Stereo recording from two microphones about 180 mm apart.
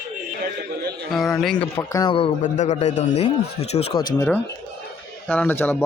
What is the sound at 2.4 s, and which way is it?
Speech, 40° left (ahead or behind).